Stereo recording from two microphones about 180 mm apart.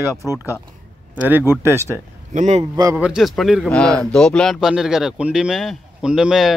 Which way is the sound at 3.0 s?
5° right (ahead or behind).